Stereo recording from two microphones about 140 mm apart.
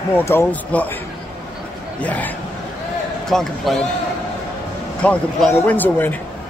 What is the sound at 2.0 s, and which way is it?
A man's voice, 10° left (ahead or behind).